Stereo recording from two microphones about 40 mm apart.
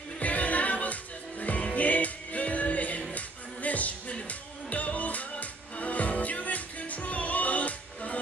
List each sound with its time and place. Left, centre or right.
0.2 s music: left